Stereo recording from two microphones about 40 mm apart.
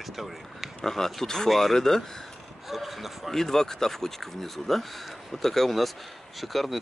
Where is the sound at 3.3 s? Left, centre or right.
Centre.